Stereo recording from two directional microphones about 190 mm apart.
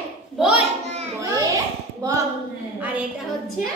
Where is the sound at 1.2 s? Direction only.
15° right (ahead or behind).